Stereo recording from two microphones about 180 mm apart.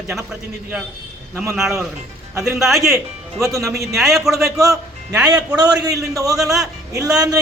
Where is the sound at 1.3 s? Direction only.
15° right (ahead or behind).